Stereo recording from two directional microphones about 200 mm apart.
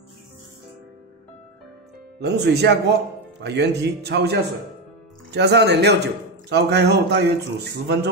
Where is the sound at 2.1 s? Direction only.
55° right (ahead or behind).